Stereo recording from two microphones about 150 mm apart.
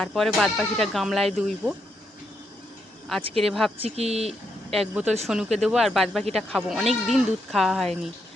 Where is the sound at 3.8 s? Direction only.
45° right (ahead or behind).